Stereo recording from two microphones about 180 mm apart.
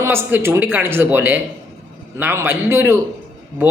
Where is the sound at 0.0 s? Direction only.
15° right (ahead or behind).